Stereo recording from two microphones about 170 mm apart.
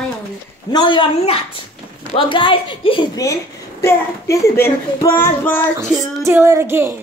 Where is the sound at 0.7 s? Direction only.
25° left (ahead or behind).